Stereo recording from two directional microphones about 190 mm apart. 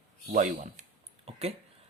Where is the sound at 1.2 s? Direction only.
35° right (ahead or behind).